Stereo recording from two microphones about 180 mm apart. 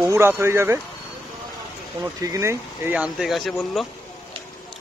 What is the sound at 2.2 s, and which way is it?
Speech, 15° right (ahead or behind).